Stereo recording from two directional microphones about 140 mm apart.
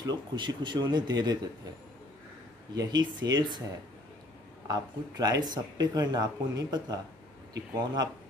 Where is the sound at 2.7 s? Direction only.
30° right (ahead or behind).